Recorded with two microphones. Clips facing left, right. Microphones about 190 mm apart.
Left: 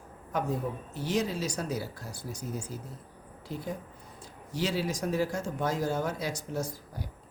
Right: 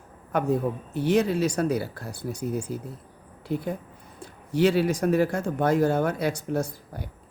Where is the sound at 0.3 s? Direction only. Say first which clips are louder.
Right 7 dB; 60° right (ahead or behind).